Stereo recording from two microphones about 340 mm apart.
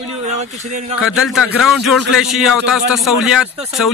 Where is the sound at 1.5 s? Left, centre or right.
Centre.